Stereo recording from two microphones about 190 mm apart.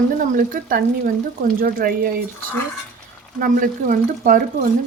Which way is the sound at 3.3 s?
45° right (ahead or behind).